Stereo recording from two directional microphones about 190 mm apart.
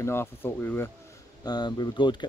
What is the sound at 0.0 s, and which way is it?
Speech, 10° left (ahead or behind).